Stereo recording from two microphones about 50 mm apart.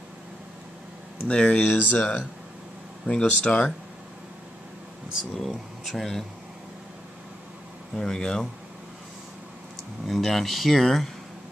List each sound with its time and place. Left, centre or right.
1.2 s speech: left
3.1 s speech: left
5.3 s speech: centre
7.9 s speech: centre
10.0 s speech: centre